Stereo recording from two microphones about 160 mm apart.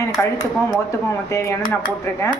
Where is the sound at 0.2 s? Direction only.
25° left (ahead or behind).